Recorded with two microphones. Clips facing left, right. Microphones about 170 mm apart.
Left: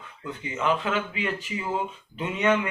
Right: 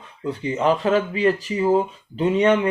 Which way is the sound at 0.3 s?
35° right (ahead or behind).